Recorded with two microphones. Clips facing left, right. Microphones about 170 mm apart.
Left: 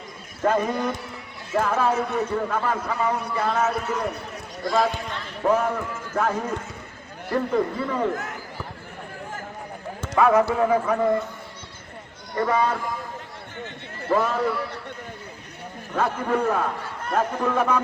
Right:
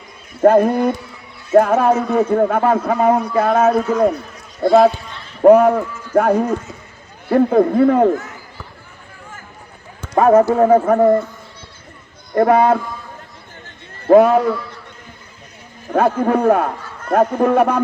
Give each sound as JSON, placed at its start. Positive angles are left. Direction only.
{"t": 0.4, "sound": "a man's voice", "side_deg": -55}
{"t": 5.4, "sound": "a man's voice", "side_deg": -55}
{"t": 10.2, "sound": "speech", "side_deg": -40}
{"t": 12.4, "sound": "a man's voice", "side_deg": -65}
{"t": 14.1, "sound": "a man's voice", "side_deg": -60}
{"t": 15.9, "sound": "a man's voice", "side_deg": -60}